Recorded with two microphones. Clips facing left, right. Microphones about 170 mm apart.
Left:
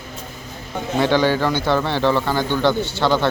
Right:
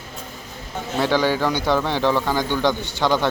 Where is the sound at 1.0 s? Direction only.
5° right (ahead or behind).